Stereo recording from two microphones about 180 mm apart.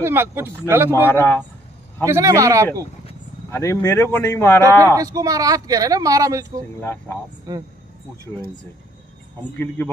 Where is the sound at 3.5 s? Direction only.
15° left (ahead or behind).